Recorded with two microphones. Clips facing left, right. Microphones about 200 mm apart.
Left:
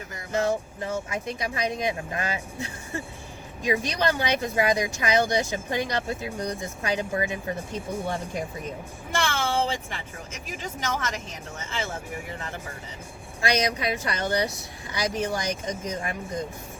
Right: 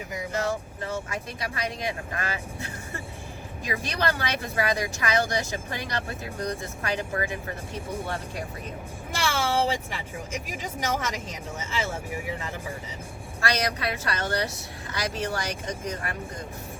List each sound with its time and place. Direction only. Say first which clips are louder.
1.1 s speech: left 3 dB; 20° left (ahead or behind)
9.1 s speech: even; 10° right (ahead or behind)
13.4 s speech: left 2 dB; 15° left (ahead or behind)